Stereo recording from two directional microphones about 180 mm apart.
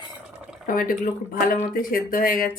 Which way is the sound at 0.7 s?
50° left (ahead or behind).